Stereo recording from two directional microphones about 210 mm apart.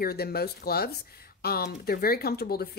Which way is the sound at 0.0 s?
50° left (ahead or behind).